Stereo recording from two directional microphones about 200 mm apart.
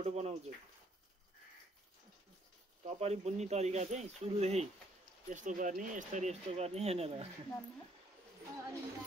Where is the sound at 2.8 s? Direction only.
30° right (ahead or behind).